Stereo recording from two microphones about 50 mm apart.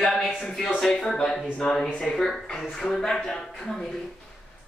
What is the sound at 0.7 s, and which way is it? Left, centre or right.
Speech, centre.